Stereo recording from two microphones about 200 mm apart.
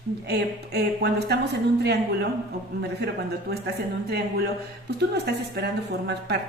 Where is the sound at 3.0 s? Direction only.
55° right (ahead or behind).